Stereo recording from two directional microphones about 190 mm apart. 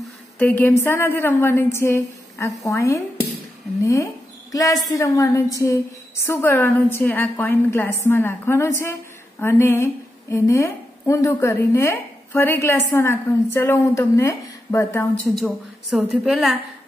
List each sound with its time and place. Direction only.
0.4 s a woman's voice: 10° left (ahead or behind)
15.3 s a woman's voice: centre (ahead or behind)